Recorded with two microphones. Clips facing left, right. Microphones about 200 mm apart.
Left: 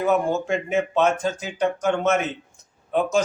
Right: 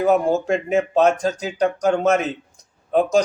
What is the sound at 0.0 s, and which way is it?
Speech, 35° right (ahead or behind).